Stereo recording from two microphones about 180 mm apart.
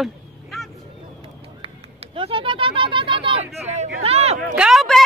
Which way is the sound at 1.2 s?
30° right (ahead or behind).